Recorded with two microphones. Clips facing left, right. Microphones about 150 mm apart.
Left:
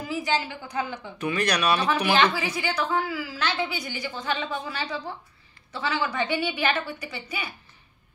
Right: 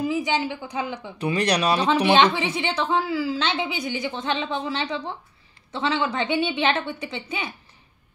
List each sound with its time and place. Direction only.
0.0 s a woman's voice: 20° right (ahead or behind)
1.1 s a woman's voice: 30° right (ahead or behind)